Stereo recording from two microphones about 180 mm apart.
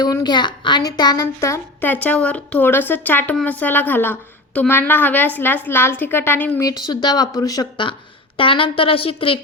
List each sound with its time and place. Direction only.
0.0 s a woman's voice: 20° left (ahead or behind)
6.7 s a woman's voice: 25° left (ahead or behind)